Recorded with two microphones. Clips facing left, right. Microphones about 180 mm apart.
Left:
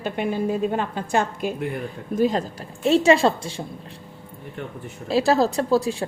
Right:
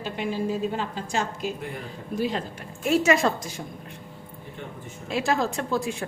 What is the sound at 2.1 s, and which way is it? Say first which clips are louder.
Speech: left 6 dB; 45° left (ahead or behind).